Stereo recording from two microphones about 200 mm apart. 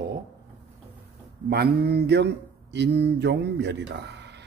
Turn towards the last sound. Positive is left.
turn(degrees=-60)  # may be behind; listen again after turning